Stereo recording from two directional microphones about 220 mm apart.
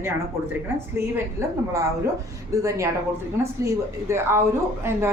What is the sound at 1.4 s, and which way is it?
A woman's voice, 15° right (ahead or behind).